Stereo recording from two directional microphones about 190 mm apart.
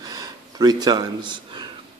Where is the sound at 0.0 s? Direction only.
20° right (ahead or behind).